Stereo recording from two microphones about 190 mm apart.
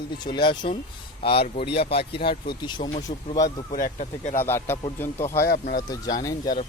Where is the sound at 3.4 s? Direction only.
45° left (ahead or behind).